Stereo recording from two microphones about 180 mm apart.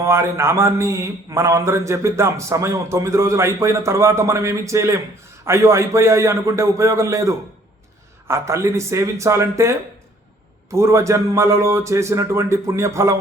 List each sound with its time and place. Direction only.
0.0 s a man's voice: 15° right (ahead or behind)